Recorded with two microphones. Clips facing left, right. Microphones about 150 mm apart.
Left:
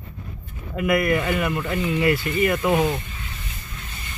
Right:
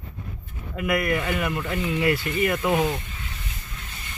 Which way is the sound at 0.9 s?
35° left (ahead or behind).